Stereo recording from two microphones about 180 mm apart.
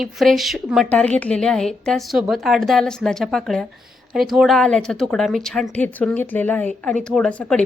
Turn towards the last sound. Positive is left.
turn(degrees=5)  # may be behind; listen again after turning